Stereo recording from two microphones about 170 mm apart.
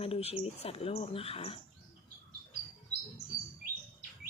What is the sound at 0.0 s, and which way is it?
Speech, 35° left (ahead or behind).